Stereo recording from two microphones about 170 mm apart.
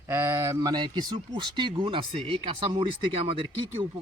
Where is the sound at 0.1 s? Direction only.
15° right (ahead or behind); by 3.4 s 30° right (ahead or behind).